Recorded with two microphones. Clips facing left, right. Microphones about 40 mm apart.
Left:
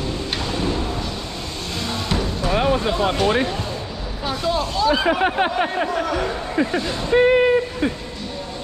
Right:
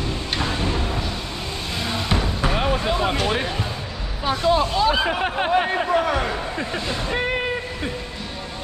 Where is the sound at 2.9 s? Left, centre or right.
Centre.